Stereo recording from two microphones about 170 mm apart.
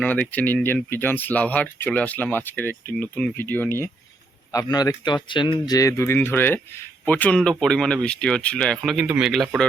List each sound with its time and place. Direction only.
0.0 s speech: 10° left (ahead or behind)